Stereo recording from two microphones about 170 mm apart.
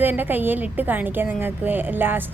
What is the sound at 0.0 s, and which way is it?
A woman's voice, 10° right (ahead or behind).